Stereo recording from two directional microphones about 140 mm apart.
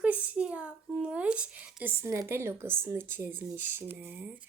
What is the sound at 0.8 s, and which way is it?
Speech, 5° right (ahead or behind).